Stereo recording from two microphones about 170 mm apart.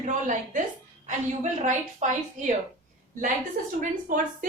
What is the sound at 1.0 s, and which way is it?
Speech, 45° right (ahead or behind).